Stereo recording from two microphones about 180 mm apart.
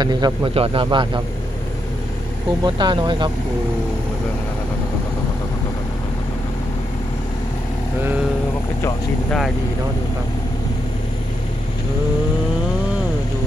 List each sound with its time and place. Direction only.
0.0 s a man's voice: 25° right (ahead or behind)
2.6 s a man's voice: 25° right (ahead or behind)